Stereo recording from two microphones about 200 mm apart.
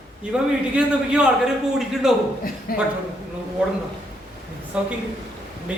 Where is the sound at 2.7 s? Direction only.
45° left (ahead or behind).